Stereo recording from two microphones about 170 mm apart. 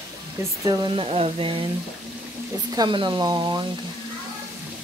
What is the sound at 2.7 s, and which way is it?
Speech, 30° right (ahead or behind).